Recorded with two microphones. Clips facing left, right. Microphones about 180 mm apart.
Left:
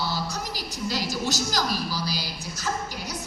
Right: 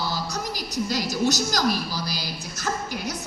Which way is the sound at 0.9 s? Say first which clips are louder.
Right 4 dB; 45° right (ahead or behind).